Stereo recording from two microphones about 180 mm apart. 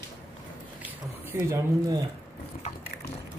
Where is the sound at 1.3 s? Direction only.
15° right (ahead or behind).